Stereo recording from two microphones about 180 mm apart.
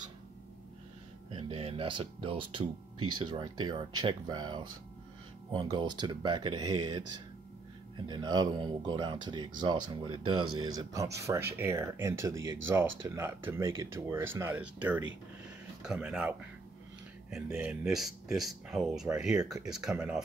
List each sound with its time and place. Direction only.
1.3 s speech: 35° right (ahead or behind)
8.1 s speech: 25° right (ahead or behind); by 20.2 s 5° right (ahead or behind)